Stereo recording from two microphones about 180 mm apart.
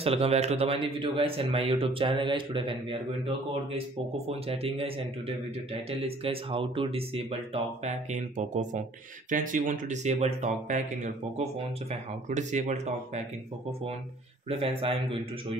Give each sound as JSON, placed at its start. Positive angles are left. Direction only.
{"t": 0.0, "sound": "a man's voice", "side_deg": -35}